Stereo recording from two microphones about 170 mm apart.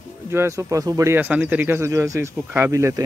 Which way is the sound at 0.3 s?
15° right (ahead or behind).